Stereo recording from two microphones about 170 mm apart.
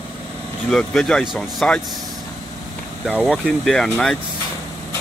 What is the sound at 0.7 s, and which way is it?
Speech, 5° left (ahead or behind).